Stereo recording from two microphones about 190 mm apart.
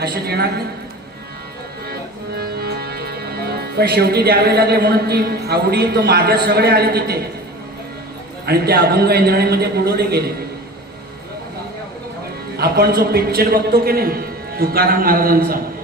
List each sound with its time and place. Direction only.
0.0 s a man's voice: 55° right (ahead or behind)
1.9 s music: 55° right (ahead or behind)
8.4 s a man's voice: 55° right (ahead or behind)
12.5 s a man's voice: 55° right (ahead or behind)